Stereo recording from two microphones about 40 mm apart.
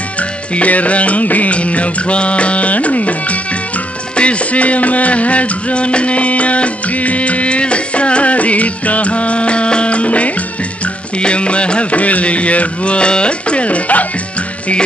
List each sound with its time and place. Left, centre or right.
0.6 s music: left